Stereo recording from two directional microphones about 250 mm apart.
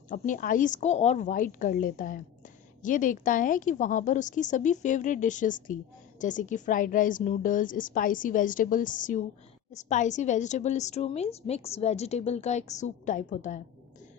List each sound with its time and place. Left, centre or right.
0.1 s a woman's voice: left